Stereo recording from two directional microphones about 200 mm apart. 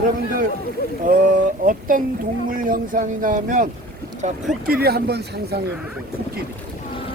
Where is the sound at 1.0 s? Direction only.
45° right (ahead or behind).